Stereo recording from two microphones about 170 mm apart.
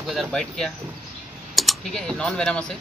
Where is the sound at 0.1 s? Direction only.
Centre (ahead or behind).